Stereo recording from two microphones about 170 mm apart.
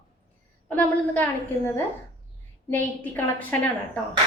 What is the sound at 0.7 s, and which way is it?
A woman's voice, 10° left (ahead or behind).